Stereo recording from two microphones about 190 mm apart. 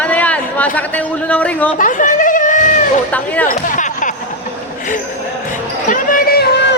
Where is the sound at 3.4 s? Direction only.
45° left (ahead or behind).